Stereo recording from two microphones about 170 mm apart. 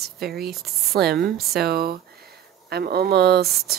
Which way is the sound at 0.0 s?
70° right (ahead or behind).